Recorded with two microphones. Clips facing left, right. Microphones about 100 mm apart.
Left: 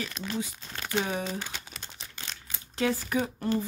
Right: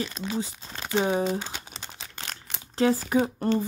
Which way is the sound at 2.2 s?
70° right (ahead or behind).